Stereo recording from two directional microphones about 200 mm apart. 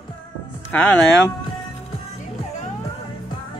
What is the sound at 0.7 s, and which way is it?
Speech, 5° left (ahead or behind).